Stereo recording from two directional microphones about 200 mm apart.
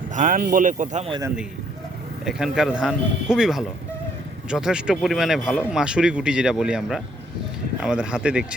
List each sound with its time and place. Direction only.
0.1 s speech: 40° right (ahead or behind)
2.2 s speech: 5° right (ahead or behind)